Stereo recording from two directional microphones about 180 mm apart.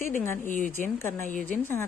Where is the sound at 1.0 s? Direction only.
10° left (ahead or behind).